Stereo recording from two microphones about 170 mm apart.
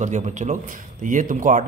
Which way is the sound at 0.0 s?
45° right (ahead or behind).